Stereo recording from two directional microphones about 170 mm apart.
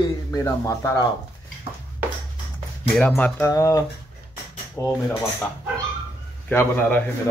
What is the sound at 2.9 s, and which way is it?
Speech, 10° left (ahead or behind).